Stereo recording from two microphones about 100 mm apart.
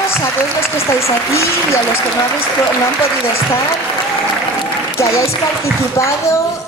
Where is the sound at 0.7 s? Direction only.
30° left (ahead or behind).